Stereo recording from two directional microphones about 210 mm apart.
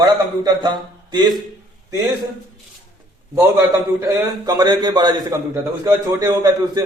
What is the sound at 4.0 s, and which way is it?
A man's voice, 15° right (ahead or behind).